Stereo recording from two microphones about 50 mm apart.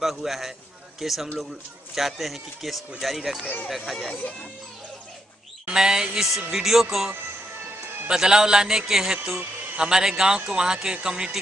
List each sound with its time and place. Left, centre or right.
0.0 s a man's voice: centre
5.7 s a man's voice: centre
8.1 s a man's voice: centre